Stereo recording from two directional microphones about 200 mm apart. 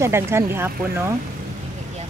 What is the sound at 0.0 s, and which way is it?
Speech, 15° right (ahead or behind).